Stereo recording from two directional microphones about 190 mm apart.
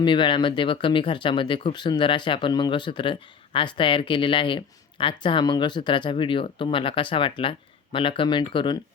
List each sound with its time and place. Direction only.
0.0 s speech: 25° left (ahead or behind)